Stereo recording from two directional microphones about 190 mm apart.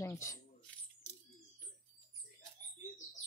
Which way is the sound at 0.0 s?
15° left (ahead or behind).